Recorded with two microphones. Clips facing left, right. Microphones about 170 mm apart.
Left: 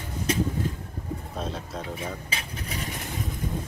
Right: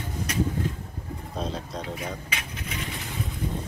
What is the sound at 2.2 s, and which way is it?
Vehicle, 35° left (ahead or behind).